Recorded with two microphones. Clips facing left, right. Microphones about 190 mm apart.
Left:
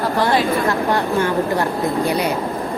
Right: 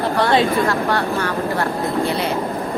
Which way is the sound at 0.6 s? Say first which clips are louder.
Left 1 dB; 20° left (ahead or behind).